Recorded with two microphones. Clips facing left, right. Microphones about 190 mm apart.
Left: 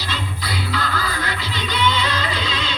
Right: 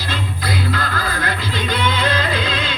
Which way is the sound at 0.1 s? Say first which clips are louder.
Right 4 dB; 50° right (ahead or behind).